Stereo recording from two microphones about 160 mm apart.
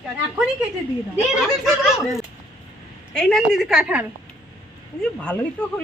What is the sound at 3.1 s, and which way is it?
Speech, 5° left (ahead or behind).